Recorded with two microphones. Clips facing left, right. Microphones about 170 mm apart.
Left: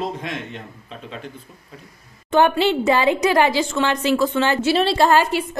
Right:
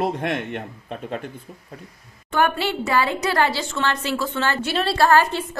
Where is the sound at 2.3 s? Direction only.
20° left (ahead or behind).